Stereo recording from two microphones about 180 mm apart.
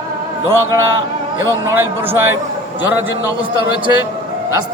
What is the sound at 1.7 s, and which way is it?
A man's voice, 15° right (ahead or behind).